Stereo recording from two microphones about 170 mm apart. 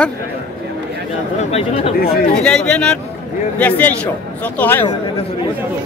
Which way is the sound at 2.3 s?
5° left (ahead or behind).